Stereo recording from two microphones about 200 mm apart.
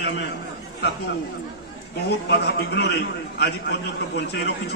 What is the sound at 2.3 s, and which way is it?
A man's voice, 55° left (ahead or behind).